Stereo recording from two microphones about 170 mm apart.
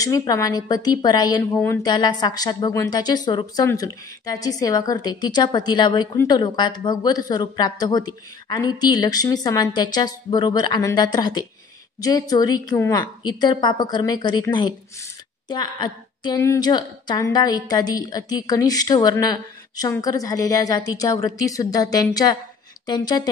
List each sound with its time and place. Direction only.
0.0 s a woman's voice: 20° left (ahead or behind)